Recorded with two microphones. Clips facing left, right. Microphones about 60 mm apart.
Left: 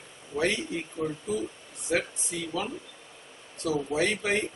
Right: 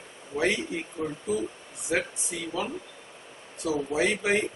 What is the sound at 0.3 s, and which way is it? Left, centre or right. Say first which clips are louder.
Speech: right 1 dB; right.